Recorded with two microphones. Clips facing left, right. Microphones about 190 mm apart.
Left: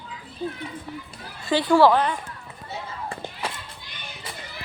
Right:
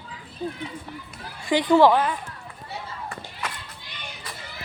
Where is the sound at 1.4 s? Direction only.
15° right (ahead or behind).